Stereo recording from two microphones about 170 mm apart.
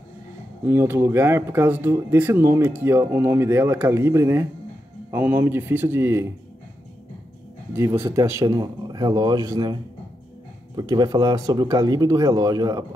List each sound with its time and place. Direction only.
0.7 s speech: 15° right (ahead or behind)
8.0 s speech: 15° right (ahead or behind)
10.8 s speech: 20° right (ahead or behind)